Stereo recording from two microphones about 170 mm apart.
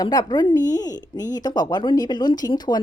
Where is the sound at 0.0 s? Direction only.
25° left (ahead or behind).